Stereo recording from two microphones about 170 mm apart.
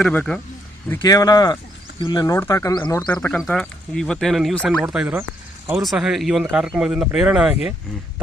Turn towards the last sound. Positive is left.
turn(degrees=-5)  # may be behind; listen again after turning